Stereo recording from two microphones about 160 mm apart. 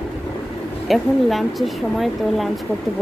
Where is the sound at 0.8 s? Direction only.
Centre (ahead or behind).